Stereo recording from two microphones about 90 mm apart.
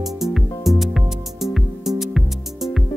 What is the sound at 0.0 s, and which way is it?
Music, 5° right (ahead or behind).